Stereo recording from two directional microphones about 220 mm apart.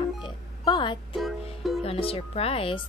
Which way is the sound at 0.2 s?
20° left (ahead or behind).